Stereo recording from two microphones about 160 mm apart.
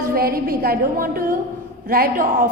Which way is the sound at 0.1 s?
65° right (ahead or behind).